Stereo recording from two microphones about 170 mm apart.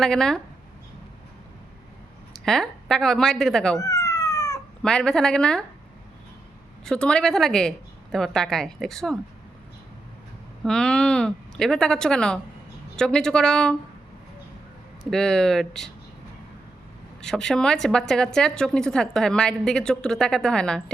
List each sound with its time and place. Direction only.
0.0 s a woman's voice: 5° left (ahead or behind)
2.3 s a woman's voice: centre (ahead or behind)
3.8 s cat: 20° left (ahead or behind)
4.8 s a woman's voice: 5° left (ahead or behind)
6.8 s a woman's voice: 5° left (ahead or behind)
10.6 s a woman's voice: 5° left (ahead or behind)
15.1 s a woman's voice: 5° left (ahead or behind)
17.2 s a woman's voice: 5° left (ahead or behind)